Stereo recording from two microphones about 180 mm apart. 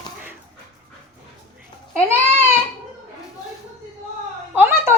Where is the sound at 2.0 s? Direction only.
15° right (ahead or behind).